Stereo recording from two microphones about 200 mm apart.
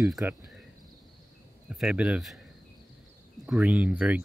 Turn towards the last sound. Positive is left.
turn(degrees=-5)  # may be behind; listen again after turning